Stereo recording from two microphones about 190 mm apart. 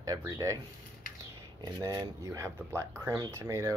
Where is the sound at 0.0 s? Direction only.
20° right (ahead or behind).